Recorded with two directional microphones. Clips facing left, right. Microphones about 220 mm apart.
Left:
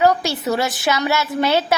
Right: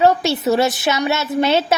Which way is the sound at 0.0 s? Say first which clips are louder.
Right 2 dB; 25° right (ahead or behind).